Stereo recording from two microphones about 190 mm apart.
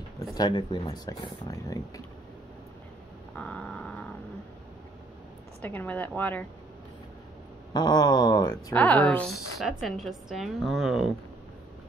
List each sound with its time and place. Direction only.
0.2 s speech: 20° left (ahead or behind)
3.3 s a sound: 5° left (ahead or behind)
5.6 s a woman's voice: 10° left (ahead or behind)
7.7 s speech: 20° left (ahead or behind)
8.7 s a woman's voice: 10° left (ahead or behind)